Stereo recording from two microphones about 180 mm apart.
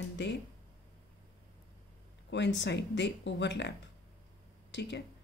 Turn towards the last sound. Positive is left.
turn(degrees=75)  # may be behind; listen again after turning